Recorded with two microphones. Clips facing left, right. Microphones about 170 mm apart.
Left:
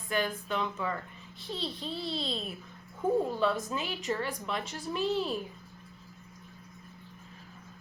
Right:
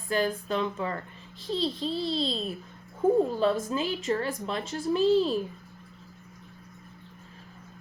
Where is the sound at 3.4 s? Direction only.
30° right (ahead or behind).